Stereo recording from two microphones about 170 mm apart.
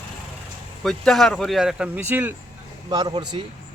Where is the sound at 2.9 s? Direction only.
25° right (ahead or behind).